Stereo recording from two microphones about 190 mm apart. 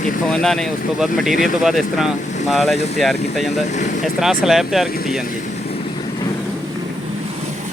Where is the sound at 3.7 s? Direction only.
40° left (ahead or behind).